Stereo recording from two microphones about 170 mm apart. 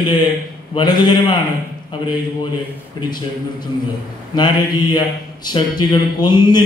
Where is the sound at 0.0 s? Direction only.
25° left (ahead or behind).